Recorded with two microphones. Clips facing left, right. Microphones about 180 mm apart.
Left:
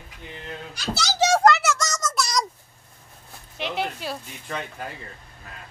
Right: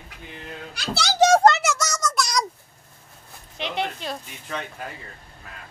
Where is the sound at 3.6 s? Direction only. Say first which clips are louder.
Even; 5° left (ahead or behind).